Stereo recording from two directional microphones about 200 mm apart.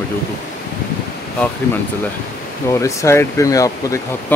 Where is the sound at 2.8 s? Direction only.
15° left (ahead or behind).